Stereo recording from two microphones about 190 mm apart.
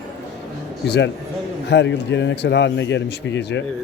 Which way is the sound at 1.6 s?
65° left (ahead or behind).